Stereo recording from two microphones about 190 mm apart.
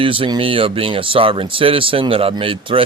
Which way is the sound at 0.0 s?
30° right (ahead or behind).